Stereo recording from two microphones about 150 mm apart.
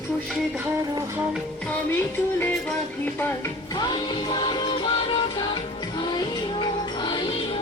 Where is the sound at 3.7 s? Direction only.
25° left (ahead or behind).